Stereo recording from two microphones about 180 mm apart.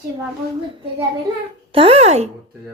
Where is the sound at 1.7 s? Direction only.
30° right (ahead or behind).